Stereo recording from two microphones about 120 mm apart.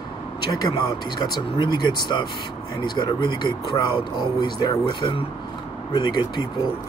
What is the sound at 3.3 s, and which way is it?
Speech, 35° left (ahead or behind).